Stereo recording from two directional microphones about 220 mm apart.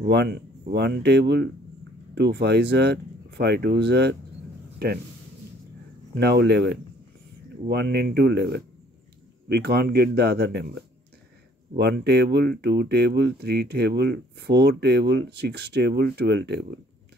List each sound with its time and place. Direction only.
0.0 s speech: 50° right (ahead or behind)
6.1 s speech: 50° right (ahead or behind)